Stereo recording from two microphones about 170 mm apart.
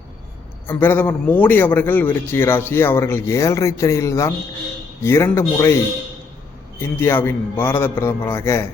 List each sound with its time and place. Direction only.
0.7 s a man's voice: 10° left (ahead or behind)
6.7 s a man's voice: 15° left (ahead or behind)